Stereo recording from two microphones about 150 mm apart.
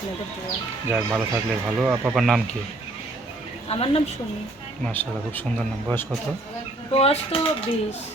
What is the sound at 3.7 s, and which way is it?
Speech, 40° left (ahead or behind).